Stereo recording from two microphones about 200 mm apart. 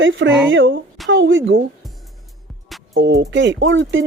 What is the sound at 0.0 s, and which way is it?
Speech, 70° right (ahead or behind).